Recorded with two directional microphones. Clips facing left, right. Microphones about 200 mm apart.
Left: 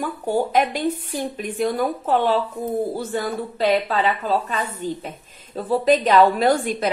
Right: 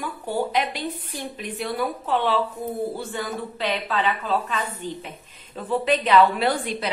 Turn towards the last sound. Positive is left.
turn(degrees=45)  # may be behind; listen again after turning